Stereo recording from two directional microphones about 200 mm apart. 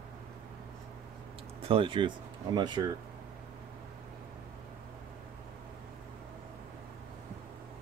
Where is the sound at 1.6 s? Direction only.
25° right (ahead or behind).